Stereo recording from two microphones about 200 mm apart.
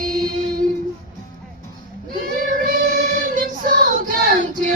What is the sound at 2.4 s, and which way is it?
Child singing, 45° right (ahead or behind).